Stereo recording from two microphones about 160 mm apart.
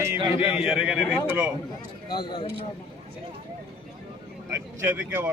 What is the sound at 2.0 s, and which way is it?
Speech, 30° left (ahead or behind).